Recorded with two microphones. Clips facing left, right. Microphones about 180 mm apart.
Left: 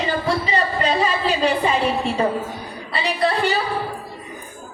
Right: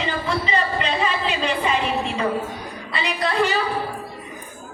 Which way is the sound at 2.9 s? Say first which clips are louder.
Left 3 dB; 35° left (ahead or behind).